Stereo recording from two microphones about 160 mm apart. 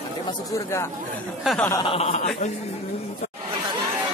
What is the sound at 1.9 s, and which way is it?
Speech, 40° left (ahead or behind).